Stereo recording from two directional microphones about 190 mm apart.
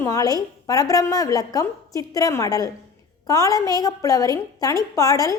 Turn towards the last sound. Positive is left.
turn(degrees=20)  # may be behind; listen again after turning